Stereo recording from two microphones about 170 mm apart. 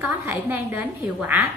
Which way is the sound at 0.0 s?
10° right (ahead or behind).